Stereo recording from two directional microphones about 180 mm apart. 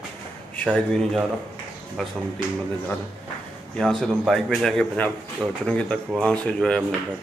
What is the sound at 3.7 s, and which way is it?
Speech, 5° left (ahead or behind).